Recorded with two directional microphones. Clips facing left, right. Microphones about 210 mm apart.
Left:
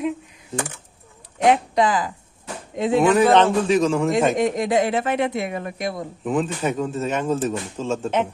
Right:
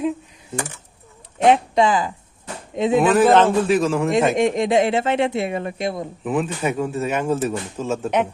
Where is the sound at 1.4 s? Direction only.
25° right (ahead or behind).